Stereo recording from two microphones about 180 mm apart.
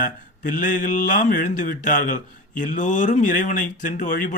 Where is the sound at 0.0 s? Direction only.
45° left (ahead or behind).